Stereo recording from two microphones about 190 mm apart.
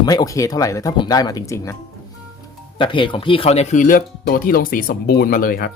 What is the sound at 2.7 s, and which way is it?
Speech, 25° left (ahead or behind).